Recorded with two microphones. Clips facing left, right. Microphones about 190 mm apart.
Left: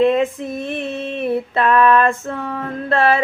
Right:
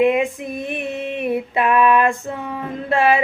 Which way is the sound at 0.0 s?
15° right (ahead or behind).